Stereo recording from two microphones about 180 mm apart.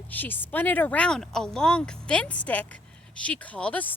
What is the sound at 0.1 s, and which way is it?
Speech, 10° left (ahead or behind).